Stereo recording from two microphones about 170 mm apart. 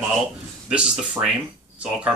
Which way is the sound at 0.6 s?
5° right (ahead or behind).